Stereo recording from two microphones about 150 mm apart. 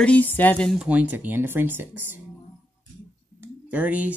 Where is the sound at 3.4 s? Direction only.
10° right (ahead or behind).